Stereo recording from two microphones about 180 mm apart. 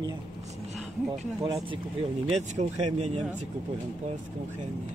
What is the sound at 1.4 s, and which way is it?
Speech, 30° right (ahead or behind).